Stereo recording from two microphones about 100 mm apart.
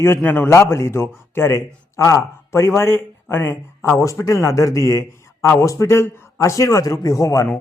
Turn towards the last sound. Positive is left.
turn(degrees=35)  # may be behind; listen again after turning